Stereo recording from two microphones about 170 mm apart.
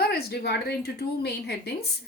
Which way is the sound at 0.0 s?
70° left (ahead or behind).